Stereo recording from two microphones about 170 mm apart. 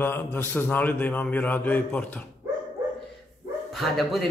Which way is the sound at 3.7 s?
Centre (ahead or behind).